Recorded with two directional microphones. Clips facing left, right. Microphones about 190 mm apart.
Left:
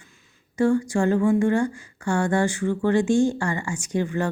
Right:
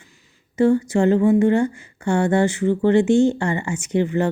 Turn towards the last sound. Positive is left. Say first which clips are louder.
# right 5 dB
turn(degrees=-20)  # may be behind; listen again after turning